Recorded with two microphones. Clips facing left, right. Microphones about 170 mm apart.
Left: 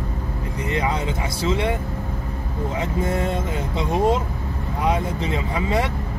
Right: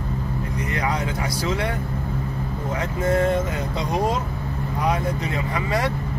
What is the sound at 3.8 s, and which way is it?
Speech, 25° left (ahead or behind).